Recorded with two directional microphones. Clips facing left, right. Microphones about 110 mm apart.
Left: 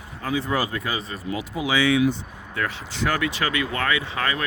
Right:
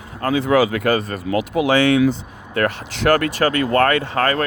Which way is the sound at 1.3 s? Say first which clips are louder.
Right 9 dB; 75° right (ahead or behind).